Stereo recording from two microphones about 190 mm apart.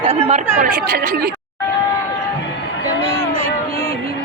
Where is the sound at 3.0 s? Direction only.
35° right (ahead or behind).